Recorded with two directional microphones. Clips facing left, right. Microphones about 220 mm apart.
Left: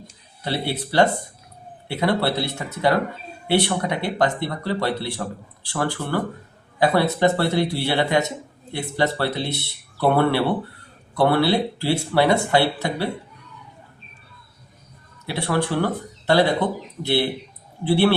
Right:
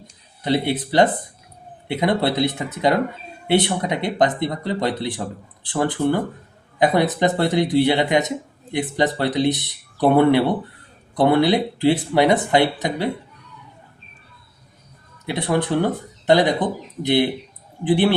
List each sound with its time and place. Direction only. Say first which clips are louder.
0.4 s speech: right 5 dB; 20° right (ahead or behind)
15.3 s speech: right 2 dB; 20° right (ahead or behind)